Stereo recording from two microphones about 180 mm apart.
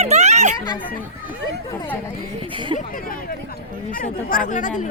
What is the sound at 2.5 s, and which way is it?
Speech, 25° right (ahead or behind).